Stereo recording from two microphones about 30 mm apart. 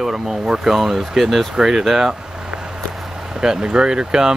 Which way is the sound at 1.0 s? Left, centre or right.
Centre.